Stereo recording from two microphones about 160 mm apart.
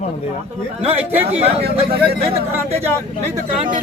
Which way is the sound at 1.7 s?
85° right.